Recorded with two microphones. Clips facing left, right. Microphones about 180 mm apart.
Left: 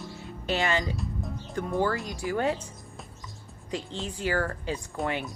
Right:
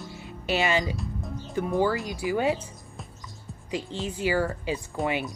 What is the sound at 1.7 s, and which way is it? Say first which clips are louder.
Speech: right 2 dB; 5° right (ahead or behind).